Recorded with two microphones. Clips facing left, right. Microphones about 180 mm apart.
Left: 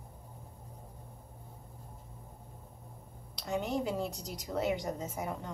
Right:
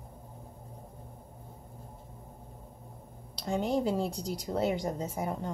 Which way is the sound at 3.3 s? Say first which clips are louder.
Right 4 dB; 30° right (ahead or behind).